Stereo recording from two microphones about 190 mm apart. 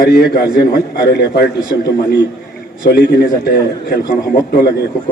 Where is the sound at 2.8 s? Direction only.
55° left (ahead or behind).